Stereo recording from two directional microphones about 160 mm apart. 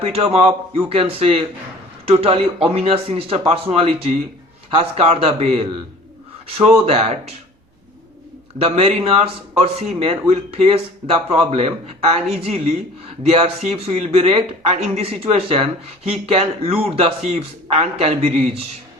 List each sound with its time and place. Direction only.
0.0 s speech: 40° right (ahead or behind)
8.5 s speech: 40° right (ahead or behind)